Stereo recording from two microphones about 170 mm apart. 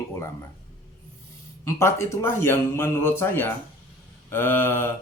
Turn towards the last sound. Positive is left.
turn(degrees=10)  # may be behind; listen again after turning